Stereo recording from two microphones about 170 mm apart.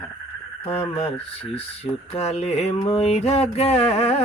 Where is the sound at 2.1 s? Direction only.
40° left (ahead or behind).